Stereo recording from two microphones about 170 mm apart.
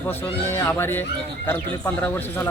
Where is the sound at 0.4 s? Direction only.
15° left (ahead or behind).